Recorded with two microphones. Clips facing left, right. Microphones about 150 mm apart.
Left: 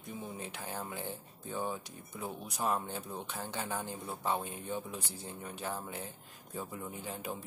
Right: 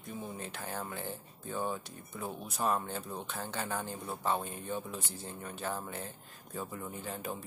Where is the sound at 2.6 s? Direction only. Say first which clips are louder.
Right 2 dB; 15° left (ahead or behind).